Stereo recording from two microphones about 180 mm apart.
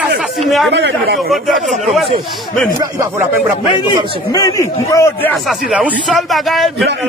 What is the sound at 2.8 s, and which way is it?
Speech, 20° right (ahead or behind).